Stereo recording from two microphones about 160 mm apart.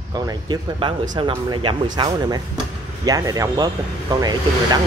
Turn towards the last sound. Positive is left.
turn(degrees=-25)  # may be behind; listen again after turning